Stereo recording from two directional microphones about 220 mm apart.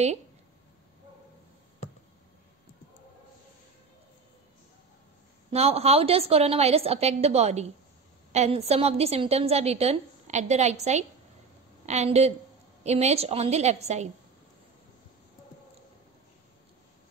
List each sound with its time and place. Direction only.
5.5 s a woman's voice: 30° right (ahead or behind)